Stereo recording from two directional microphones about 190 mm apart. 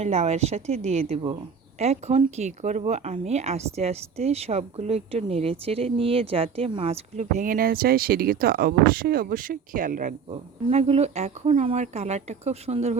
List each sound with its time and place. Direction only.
0.0 s speech: 35° right (ahead or behind)
10.2 s speech: 35° right (ahead or behind)